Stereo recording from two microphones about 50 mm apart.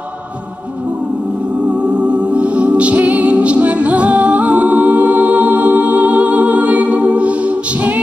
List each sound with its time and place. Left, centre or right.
2.0 s music: right